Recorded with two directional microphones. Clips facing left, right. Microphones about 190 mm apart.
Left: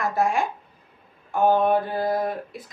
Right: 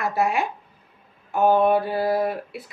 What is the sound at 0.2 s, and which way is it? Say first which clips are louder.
A woman's voice: even; 5° right (ahead or behind).